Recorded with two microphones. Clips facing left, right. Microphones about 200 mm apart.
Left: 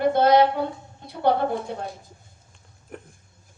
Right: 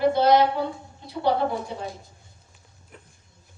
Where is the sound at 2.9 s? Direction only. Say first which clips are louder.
Left 10 dB; 55° left (ahead or behind).